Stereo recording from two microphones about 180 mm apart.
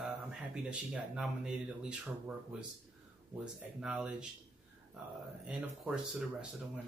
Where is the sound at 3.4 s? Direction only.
5° right (ahead or behind).